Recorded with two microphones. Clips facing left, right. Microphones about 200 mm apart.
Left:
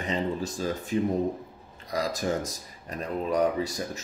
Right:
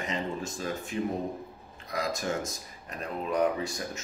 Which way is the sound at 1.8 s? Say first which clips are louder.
Left 3 dB; 35° left (ahead or behind).